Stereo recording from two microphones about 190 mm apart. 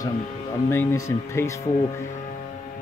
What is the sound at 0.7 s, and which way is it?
Speech, 15° left (ahead or behind).